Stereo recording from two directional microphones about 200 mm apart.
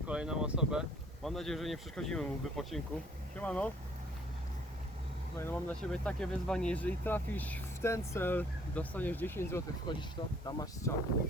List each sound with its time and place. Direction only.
0.1 s speech: 5° right (ahead or behind)
5.4 s speech: 10° left (ahead or behind)